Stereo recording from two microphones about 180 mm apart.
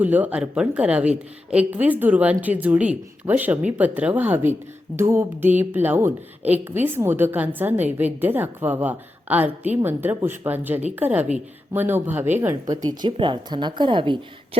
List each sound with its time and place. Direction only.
0.0 s a woman's voice: 10° right (ahead or behind); by 14.6 s 30° right (ahead or behind)